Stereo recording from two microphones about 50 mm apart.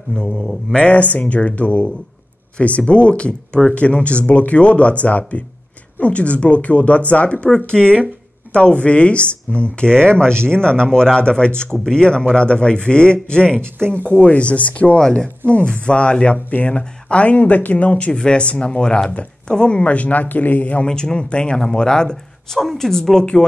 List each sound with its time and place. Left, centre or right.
0.3 s mantra: centre
0.7 s speech: left
15.0 s speech: centre
16.4 s speech: left
20.8 s speech: centre